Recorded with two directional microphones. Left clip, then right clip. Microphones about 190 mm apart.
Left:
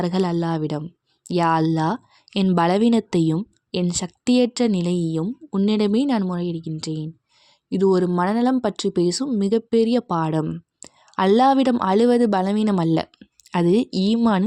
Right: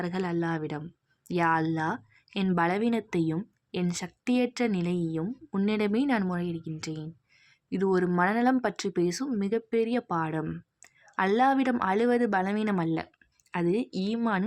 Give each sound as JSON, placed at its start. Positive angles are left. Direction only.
{"t": 0.0, "sound": "a woman's voice", "side_deg": 45}
{"t": 5.5, "sound": "speech", "side_deg": 25}
{"t": 5.7, "sound": "speech", "side_deg": 35}